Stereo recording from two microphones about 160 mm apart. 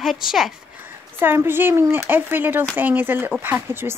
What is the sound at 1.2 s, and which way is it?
Speech, 15° right (ahead or behind).